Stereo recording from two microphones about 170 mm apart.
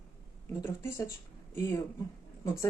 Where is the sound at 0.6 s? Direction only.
15° left (ahead or behind).